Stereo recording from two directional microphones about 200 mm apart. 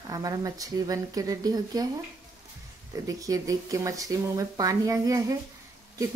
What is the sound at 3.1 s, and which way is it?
Speech, 15° right (ahead or behind).